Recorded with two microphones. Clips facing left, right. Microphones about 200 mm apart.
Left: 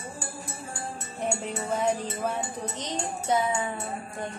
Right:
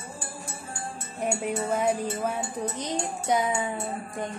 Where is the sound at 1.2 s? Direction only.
10° right (ahead or behind).